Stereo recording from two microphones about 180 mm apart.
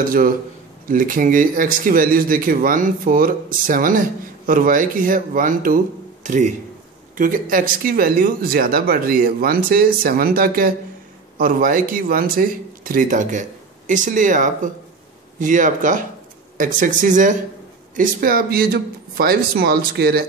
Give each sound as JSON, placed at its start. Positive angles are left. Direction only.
{"t": 0.0, "sound": "speech", "side_deg": -50}